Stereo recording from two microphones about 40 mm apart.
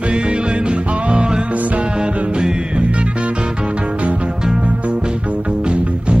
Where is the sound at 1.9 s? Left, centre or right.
Right.